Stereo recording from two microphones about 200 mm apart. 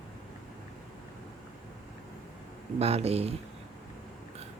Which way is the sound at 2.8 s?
30° right (ahead or behind).